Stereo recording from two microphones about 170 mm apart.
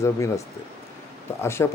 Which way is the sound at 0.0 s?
15° left (ahead or behind).